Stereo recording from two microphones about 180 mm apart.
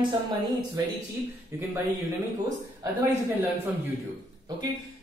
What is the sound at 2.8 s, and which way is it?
Speech, 15° right (ahead or behind).